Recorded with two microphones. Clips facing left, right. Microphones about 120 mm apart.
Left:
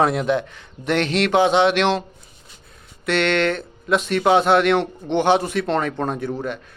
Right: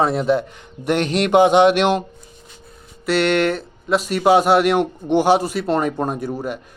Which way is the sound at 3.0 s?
5° right (ahead or behind).